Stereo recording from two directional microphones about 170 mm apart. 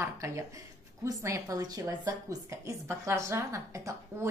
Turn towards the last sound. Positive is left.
turn(degrees=-20)  # may be behind; listen again after turning